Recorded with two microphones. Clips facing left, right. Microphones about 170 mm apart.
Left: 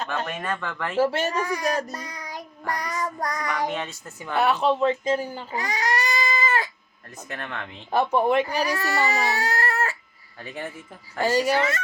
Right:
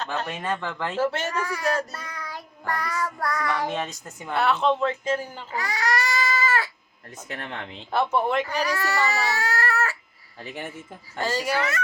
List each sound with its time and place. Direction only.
0.3 s speech: 20° right (ahead or behind)
0.9 s a child's voice: 15° left (ahead or behind)
4.9 s baby cry: 15° left (ahead or behind)
7.3 s speech: 25° right (ahead or behind)
7.9 s a child's voice: 15° left (ahead or behind)
11.2 s a child's voice: 15° left (ahead or behind)